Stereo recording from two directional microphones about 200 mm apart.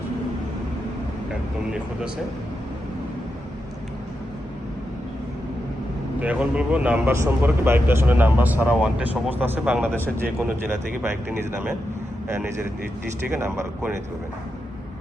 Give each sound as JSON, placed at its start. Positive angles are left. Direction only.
{"t": 6.2, "sound": "speech", "side_deg": -5}
{"t": 11.3, "sound": "speech", "side_deg": -5}